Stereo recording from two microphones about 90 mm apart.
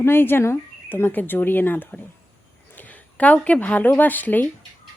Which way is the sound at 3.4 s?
15° left (ahead or behind).